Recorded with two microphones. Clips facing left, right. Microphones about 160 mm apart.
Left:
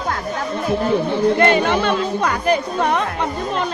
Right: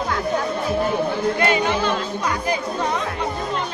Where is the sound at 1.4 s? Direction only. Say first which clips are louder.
Left 4 dB; 55° left (ahead or behind).